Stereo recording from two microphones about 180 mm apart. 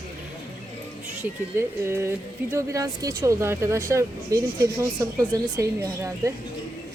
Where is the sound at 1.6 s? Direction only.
15° right (ahead or behind).